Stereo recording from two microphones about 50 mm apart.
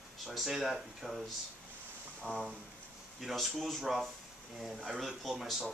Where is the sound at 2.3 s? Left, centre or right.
Left.